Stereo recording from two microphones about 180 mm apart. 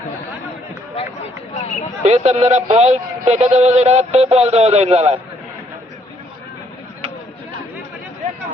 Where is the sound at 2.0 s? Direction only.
40° right (ahead or behind).